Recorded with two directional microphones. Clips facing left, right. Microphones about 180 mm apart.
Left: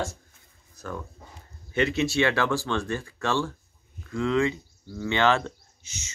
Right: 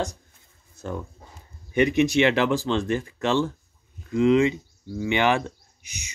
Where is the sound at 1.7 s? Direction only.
15° right (ahead or behind).